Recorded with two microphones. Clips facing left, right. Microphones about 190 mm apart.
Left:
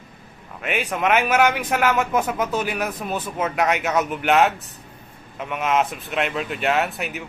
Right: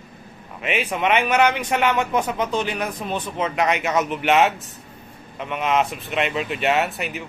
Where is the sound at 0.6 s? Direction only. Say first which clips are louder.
Even; centre (ahead or behind).